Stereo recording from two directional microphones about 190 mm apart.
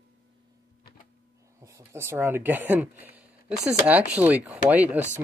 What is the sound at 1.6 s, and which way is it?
Speech, 15° right (ahead or behind).